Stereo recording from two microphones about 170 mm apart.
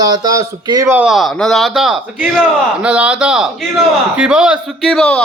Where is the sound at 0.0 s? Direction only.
20° right (ahead or behind).